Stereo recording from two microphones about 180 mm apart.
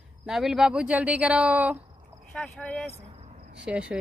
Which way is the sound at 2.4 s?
5° left (ahead or behind).